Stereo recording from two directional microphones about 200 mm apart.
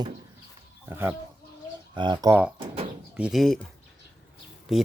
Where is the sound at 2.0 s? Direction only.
20° right (ahead or behind).